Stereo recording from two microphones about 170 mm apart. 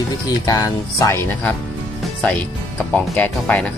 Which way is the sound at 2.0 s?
5° left (ahead or behind).